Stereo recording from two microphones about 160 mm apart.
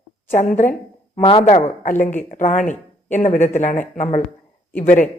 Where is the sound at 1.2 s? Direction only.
40° left (ahead or behind); by 5.1 s 55° left (ahead or behind).